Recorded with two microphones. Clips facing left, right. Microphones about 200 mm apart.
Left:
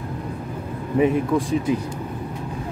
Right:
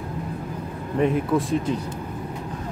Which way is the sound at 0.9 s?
Centre (ahead or behind).